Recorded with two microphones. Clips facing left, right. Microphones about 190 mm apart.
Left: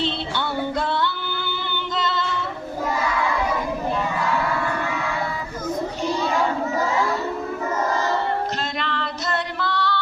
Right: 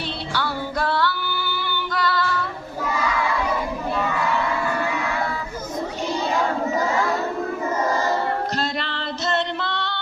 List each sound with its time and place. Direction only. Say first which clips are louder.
0.0 s music: left 2 dB; 25° left (ahead or behind)
2.0 s female singing: right 2 dB; 20° left (ahead or behind)
8.8 s female singing: even; 30° right (ahead or behind)